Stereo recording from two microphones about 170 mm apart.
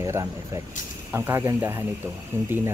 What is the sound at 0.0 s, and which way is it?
Speech, 15° right (ahead or behind).